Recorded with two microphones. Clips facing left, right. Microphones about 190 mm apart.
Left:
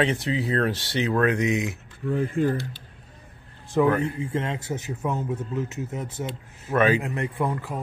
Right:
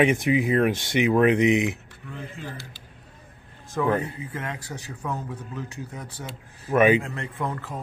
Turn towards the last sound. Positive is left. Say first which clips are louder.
# left 3 dB
turn(degrees=10)  # may be behind; listen again after turning